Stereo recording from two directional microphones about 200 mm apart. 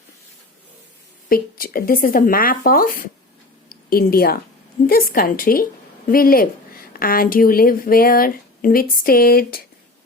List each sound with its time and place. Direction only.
1.3 s a woman's voice: 45° left (ahead or behind)
3.7 s a sound: 50° left (ahead or behind)
4.9 s a woman's voice: 45° left (ahead or behind)